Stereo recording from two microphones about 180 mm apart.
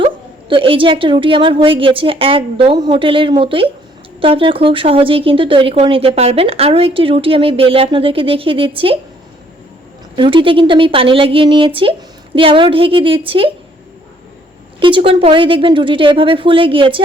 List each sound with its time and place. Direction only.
0.0 s a woman's voice: 30° right (ahead or behind)
10.2 s a woman's voice: 30° right (ahead or behind)
14.8 s a woman's voice: 30° right (ahead or behind)